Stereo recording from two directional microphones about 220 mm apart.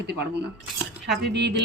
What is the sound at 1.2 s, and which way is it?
Speech, 50° right (ahead or behind).